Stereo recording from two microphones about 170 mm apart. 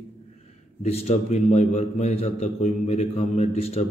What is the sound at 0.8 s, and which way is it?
A man's voice, 40° left (ahead or behind).